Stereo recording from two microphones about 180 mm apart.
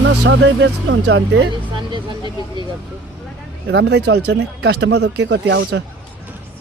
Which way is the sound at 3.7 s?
70° right (ahead or behind).